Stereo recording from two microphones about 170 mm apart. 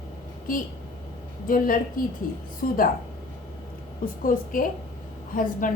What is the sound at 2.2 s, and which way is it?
Speech, 55° left (ahead or behind).